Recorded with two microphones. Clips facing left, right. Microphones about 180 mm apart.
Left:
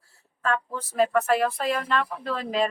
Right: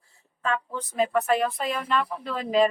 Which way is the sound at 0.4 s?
Centre (ahead or behind).